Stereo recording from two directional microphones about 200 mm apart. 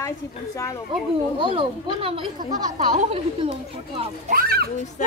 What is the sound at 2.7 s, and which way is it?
A child's voice, 35° right (ahead or behind).